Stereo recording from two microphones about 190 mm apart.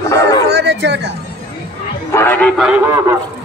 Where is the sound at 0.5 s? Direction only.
60° right (ahead or behind).